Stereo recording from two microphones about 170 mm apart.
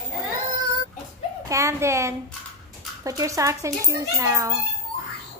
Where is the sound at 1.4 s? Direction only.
20° right (ahead or behind).